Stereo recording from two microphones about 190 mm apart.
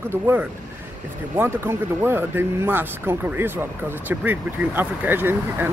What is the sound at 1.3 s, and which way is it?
Speech, 10° right (ahead or behind).